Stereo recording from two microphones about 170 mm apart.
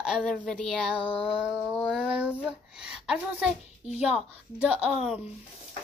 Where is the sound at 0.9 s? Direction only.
35° left (ahead or behind).